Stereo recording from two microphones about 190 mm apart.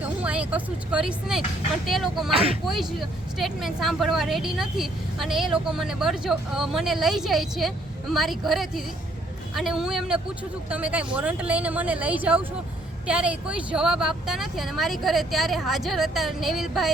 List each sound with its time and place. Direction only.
0.0 s a woman's voice: 5° right (ahead or behind)
2.3 s speech: 30° right (ahead or behind)
2.6 s a woman's voice: centre (ahead or behind)